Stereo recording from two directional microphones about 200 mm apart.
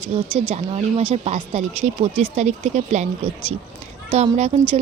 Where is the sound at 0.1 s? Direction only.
30° right (ahead or behind).